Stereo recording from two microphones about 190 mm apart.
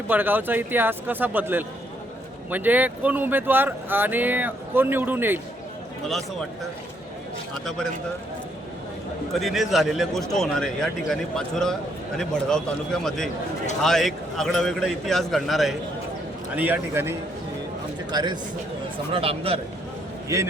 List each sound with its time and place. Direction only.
0.1 s speech: 10° right (ahead or behind)
7.6 s a man's voice: centre (ahead or behind)
9.3 s a man's voice: centre (ahead or behind); by 19.5 s 30° right (ahead or behind)
20.2 s a man's voice: 15° right (ahead or behind)